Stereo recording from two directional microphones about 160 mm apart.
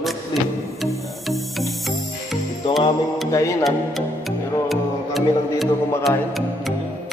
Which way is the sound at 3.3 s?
20° left (ahead or behind).